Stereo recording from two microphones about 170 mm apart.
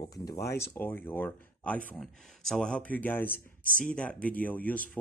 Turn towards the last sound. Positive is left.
turn(degrees=10)  # may be behind; listen again after turning